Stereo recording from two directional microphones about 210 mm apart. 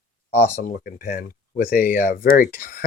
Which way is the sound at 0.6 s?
40° left (ahead or behind).